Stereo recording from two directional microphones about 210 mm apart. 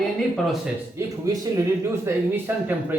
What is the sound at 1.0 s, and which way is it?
Speech, 15° right (ahead or behind).